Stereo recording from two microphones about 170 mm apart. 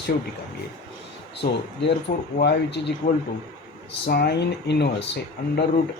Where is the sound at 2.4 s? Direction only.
80° left.